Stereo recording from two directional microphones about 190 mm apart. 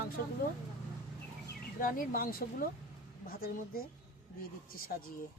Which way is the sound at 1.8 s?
45° left (ahead or behind).